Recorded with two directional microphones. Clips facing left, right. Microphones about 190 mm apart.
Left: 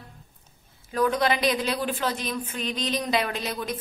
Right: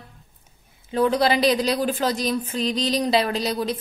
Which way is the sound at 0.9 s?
30° right (ahead or behind).